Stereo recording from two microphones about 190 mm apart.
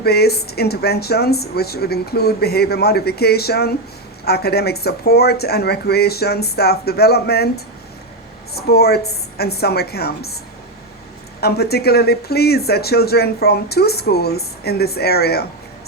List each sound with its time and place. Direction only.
0.0 s speech: 55° left (ahead or behind)
11.3 s speech: 55° left (ahead or behind)